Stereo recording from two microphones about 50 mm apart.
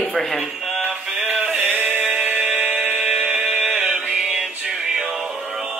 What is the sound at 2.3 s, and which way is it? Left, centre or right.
Music, centre.